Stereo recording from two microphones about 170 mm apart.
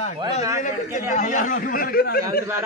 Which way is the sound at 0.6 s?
45° left (ahead or behind).